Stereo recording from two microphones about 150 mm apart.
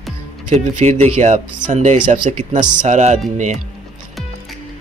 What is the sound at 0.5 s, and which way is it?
Speech, 50° right (ahead or behind).